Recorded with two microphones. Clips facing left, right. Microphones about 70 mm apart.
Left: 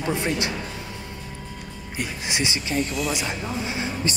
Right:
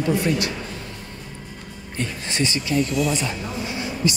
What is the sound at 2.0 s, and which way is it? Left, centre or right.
Speech, centre.